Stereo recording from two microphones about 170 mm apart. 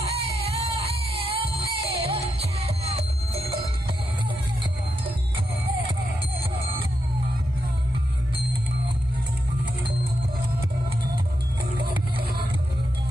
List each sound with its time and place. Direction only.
0.4 s music: 35° right (ahead or behind)